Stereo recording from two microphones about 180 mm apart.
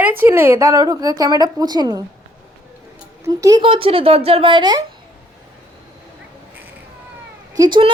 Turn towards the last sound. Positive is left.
turn(degrees=-25)  # may be behind; listen again after turning